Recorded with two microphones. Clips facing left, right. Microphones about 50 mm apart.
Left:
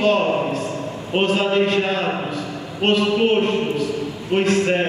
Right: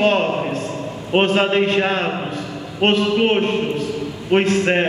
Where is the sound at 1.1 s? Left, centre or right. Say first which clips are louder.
Right 3 dB; right.